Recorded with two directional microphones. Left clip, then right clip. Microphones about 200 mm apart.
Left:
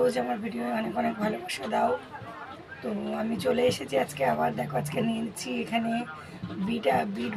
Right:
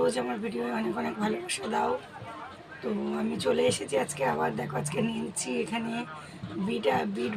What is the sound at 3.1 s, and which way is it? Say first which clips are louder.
Speech: left 1 dB; 15° left (ahead or behind).